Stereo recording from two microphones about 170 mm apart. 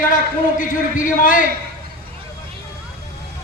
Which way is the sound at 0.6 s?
50° left (ahead or behind).